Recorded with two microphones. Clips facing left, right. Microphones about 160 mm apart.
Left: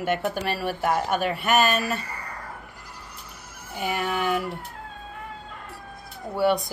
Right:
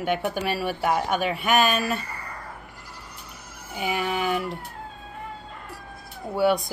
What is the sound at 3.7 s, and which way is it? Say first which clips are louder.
Speech: even; 5° right (ahead or behind).